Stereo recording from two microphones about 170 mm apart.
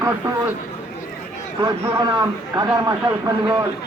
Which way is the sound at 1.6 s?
15° right (ahead or behind).